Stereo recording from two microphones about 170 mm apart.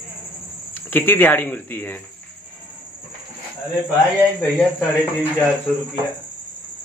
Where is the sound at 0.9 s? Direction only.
10° left (ahead or behind).